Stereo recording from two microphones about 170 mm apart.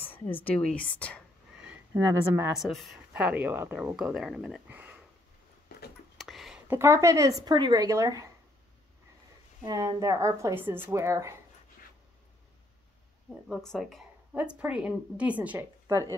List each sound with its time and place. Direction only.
0.0 s a woman's voice: 10° left (ahead or behind)
2.0 s a woman's voice: 15° right (ahead or behind)
2.5 s speech: centre (ahead or behind)
5.7 s a sound: 65° left (ahead or behind)
6.1 s speech: centre (ahead or behind); by 8.3 s 20° right (ahead or behind)
9.6 s a woman's voice: 20° right (ahead or behind)
13.5 s a woman's voice: centre (ahead or behind)